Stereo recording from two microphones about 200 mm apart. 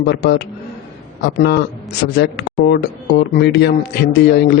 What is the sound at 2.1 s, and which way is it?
Speech, 55° left (ahead or behind).